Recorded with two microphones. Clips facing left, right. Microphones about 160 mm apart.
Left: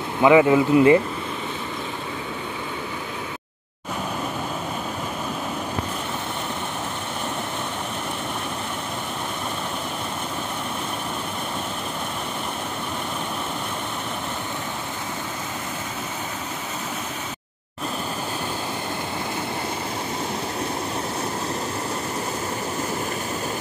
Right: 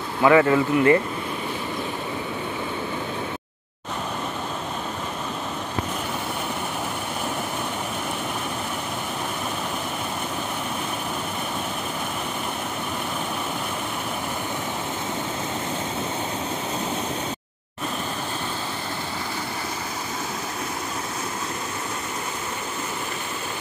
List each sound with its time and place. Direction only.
0.2 s speech: 15° left (ahead or behind)